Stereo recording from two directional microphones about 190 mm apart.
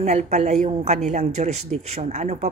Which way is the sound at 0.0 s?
35° right (ahead or behind).